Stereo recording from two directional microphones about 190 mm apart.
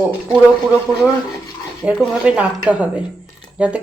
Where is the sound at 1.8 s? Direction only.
5° right (ahead or behind).